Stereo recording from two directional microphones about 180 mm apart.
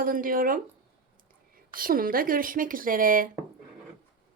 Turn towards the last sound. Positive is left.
turn(degrees=-50)  # may be behind; listen again after turning